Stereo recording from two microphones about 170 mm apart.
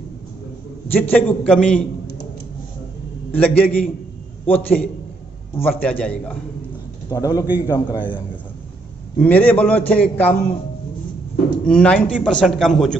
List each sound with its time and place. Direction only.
0.8 s a man's voice: 10° left (ahead or behind)
3.3 s a man's voice: 10° left (ahead or behind)
7.1 s a man's voice: 20° left (ahead or behind)
9.2 s a man's voice: 10° left (ahead or behind)
11.6 s a man's voice: 5° left (ahead or behind)